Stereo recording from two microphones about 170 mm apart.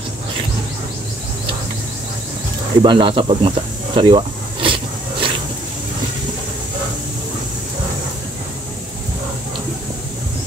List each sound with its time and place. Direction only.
2.8 s snake: 30° right (ahead or behind)